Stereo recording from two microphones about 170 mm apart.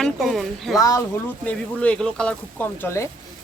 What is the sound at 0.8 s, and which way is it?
Speech, 20° left (ahead or behind).